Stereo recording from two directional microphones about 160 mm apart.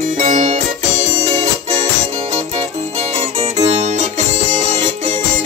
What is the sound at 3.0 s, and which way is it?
Music, 45° right (ahead or behind).